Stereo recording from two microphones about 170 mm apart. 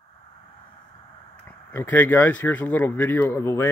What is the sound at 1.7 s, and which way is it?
Speech, 10° left (ahead or behind).